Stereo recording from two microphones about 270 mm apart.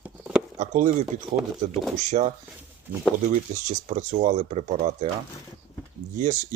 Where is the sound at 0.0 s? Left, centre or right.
Centre.